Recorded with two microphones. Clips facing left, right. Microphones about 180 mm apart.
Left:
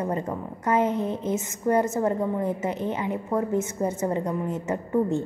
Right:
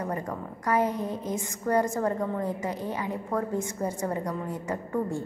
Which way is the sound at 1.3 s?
20° left (ahead or behind).